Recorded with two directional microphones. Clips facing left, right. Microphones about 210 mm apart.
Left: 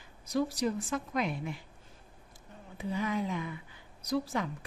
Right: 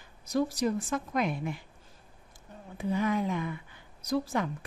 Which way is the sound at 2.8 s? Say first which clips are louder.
Right 4 dB; 50° right (ahead or behind).